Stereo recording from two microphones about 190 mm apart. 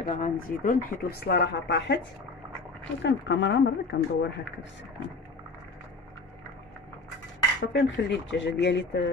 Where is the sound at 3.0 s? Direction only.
70° left (ahead or behind).